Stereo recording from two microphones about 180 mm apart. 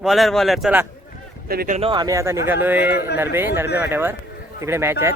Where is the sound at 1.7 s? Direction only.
30° right (ahead or behind).